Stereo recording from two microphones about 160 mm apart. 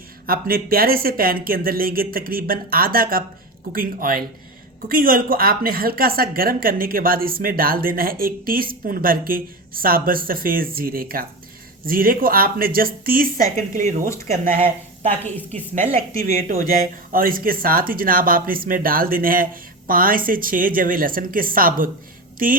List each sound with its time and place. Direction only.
0.3 s a woman's voice: 65° right (ahead or behind)
15.2 s a woman's voice: 10° left (ahead or behind)
16.2 s a woman's voice: 60° right (ahead or behind)